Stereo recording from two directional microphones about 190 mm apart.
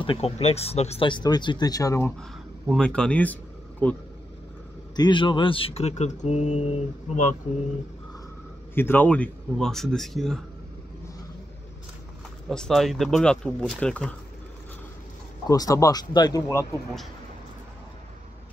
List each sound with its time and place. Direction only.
0.0 s speech: 30° left (ahead or behind)
2.6 s speech: centre (ahead or behind)
4.9 s speech: 25° left (ahead or behind)
8.7 s speech: 10° left (ahead or behind)
12.4 s speech: centre (ahead or behind)
15.4 s speech: 20° left (ahead or behind)